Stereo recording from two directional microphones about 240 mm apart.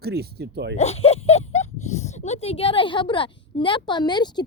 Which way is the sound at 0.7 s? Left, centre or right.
Left.